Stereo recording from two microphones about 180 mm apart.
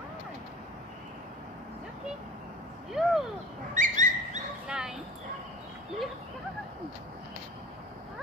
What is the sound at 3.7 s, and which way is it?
Bird, 45° right (ahead or behind).